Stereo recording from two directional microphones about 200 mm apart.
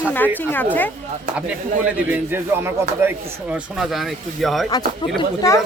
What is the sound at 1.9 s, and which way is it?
A man's voice, 10° right (ahead or behind).